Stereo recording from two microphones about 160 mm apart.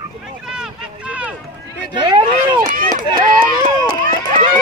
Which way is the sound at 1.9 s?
30° right (ahead or behind).